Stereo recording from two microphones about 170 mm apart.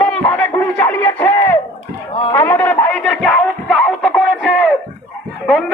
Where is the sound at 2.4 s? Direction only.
10° left (ahead or behind).